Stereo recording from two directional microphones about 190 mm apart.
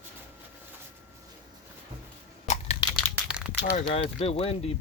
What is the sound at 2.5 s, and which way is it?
Crunch, 35° left (ahead or behind).